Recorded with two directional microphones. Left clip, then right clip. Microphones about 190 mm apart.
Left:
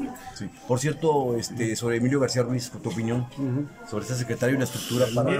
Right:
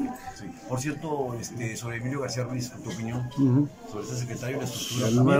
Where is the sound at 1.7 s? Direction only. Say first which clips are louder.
Left 10 dB; 55° left (ahead or behind).